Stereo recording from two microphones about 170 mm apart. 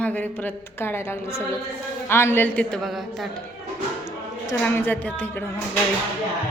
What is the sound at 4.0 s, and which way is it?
Speech, 15° left (ahead or behind).